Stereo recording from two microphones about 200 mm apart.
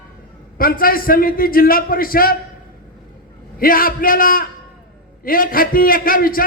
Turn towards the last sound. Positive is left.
turn(degrees=45)  # may be behind; listen again after turning